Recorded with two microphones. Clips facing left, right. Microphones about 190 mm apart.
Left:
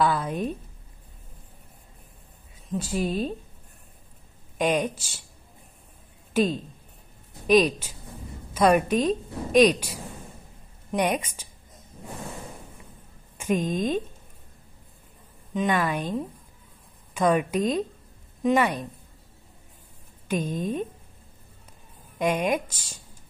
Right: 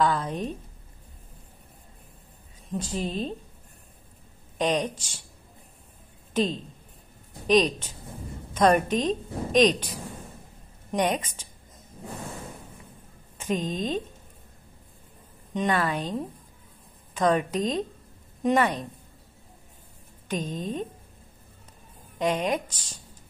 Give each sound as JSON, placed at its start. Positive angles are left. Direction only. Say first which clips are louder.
{"t": 0.0, "sound": "a woman's voice", "louder": "left 1 dB", "side_deg": 10}
{"t": 2.7, "sound": "a woman's voice", "louder": "left 3 dB", "side_deg": 10}
{"t": 4.6, "sound": "a woman's voice", "louder": "left 1 dB", "side_deg": 10}
{"t": 6.3, "sound": "a woman's voice", "louder": "left 3 dB", "side_deg": 10}
{"t": 13.4, "sound": "a woman's voice", "louder": "left 3 dB", "side_deg": 10}
{"t": 15.5, "sound": "a woman's voice", "louder": "left 1 dB", "side_deg": 0}
{"t": 20.2, "sound": "a woman's voice", "louder": "left 3 dB", "side_deg": 10}
{"t": 22.2, "sound": "a woman's voice", "louder": "left 1 dB", "side_deg": 10}